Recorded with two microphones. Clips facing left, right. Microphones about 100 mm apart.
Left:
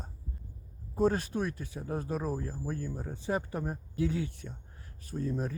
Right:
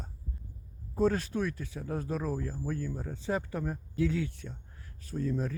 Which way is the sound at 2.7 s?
25° left (ahead or behind).